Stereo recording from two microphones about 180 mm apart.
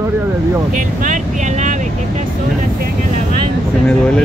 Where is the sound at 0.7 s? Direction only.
45° right (ahead or behind).